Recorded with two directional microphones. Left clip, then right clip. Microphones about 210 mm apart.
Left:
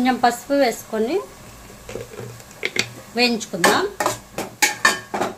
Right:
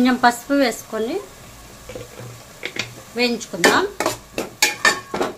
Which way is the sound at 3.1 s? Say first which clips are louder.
Left 2 dB; 20° left (ahead or behind).